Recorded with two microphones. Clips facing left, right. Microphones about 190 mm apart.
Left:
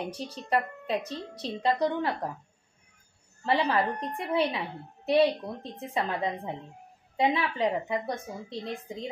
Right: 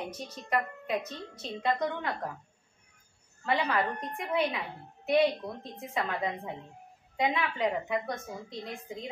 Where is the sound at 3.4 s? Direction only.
30° left (ahead or behind).